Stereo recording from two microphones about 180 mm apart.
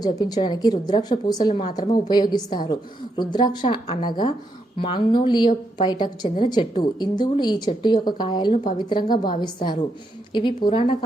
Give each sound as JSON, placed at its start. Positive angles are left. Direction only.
{"t": 0.0, "sound": "a woman's voice", "side_deg": 20}